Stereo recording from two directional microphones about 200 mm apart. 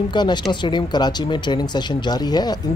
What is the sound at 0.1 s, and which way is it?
Speech, 20° left (ahead or behind).